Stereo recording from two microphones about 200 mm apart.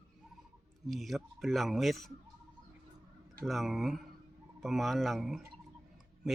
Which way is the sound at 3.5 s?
Centre (ahead or behind).